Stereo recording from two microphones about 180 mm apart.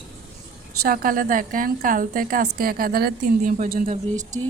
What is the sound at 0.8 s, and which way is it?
A woman's voice, 55° right (ahead or behind).